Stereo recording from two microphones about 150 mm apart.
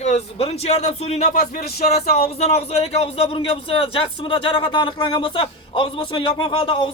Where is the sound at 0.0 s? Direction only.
45° left (ahead or behind).